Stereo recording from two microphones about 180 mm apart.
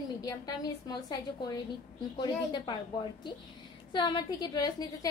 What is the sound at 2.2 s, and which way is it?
Speech, 25° left (ahead or behind).